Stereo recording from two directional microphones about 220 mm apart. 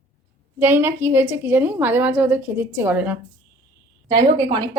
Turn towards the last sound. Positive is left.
turn(degrees=-15)  # may be behind; listen again after turning